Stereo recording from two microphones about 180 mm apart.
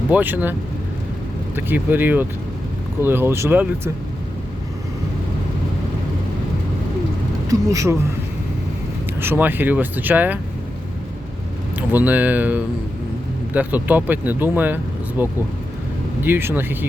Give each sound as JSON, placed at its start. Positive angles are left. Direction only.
{"t": 0.1, "sound": "speech", "side_deg": -10}
{"t": 1.5, "sound": "speech", "side_deg": -10}
{"t": 7.7, "sound": "speech", "side_deg": -20}
{"t": 9.2, "sound": "speech", "side_deg": -10}
{"t": 11.8, "sound": "speech", "side_deg": -10}